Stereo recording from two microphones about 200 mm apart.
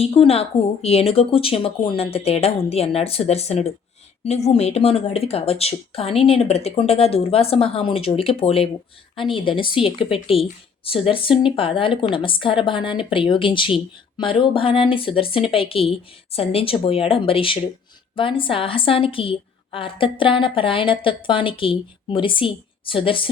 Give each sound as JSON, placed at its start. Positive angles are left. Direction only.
{"t": 0.0, "sound": "a woman's voice", "side_deg": 30}